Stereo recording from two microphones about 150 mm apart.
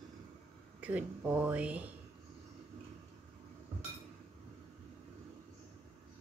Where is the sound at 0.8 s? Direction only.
10° right (ahead or behind).